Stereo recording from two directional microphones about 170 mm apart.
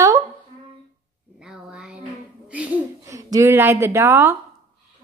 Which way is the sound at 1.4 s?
5° right (ahead or behind).